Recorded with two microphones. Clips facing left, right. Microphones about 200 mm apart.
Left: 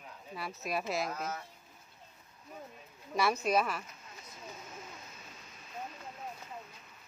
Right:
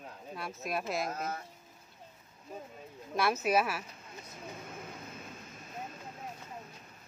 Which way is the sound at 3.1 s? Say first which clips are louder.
Right 1 dB; centre (ahead or behind).